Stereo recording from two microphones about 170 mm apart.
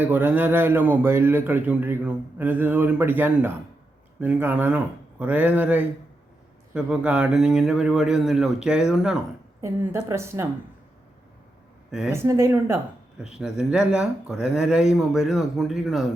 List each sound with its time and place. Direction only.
0.0 s a man's voice: 10° right (ahead or behind)
9.6 s a woman's voice: 15° right (ahead or behind)
11.9 s speech: 5° right (ahead or behind)
12.1 s a man's voice: 15° right (ahead or behind)
13.2 s speech: 5° right (ahead or behind)